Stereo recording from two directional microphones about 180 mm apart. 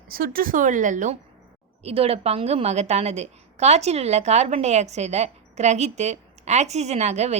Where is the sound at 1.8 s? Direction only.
35° right (ahead or behind).